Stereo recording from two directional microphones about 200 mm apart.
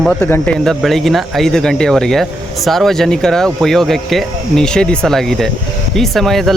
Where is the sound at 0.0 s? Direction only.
5° left (ahead or behind).